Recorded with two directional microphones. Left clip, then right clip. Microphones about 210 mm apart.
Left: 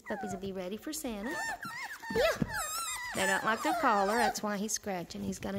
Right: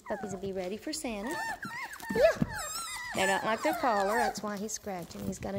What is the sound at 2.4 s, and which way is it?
Dog, 5° left (ahead or behind).